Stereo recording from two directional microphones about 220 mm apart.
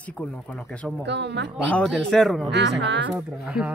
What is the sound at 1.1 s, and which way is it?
Speech, 50° right (ahead or behind).